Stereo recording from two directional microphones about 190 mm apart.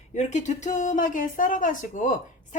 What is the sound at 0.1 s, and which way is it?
A woman's voice, 40° left (ahead or behind).